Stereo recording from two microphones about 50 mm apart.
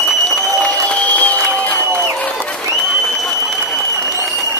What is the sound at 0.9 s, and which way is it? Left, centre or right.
Applause, left.